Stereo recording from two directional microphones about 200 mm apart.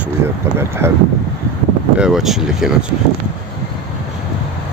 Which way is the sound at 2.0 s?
Centre (ahead or behind).